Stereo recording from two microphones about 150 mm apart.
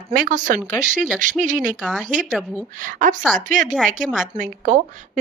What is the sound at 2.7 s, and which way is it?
A woman's voice, 60° right (ahead or behind).